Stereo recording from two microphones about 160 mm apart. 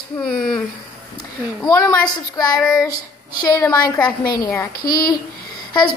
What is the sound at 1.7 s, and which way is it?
Speech, 25° left (ahead or behind).